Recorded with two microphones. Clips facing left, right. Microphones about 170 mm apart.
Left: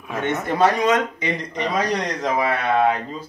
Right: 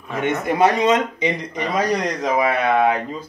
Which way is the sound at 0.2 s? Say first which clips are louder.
Right 2 dB; 15° right (ahead or behind).